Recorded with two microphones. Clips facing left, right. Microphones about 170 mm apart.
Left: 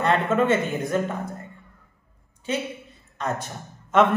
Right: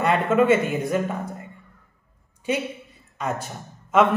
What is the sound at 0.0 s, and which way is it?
A woman's voice, 5° right (ahead or behind).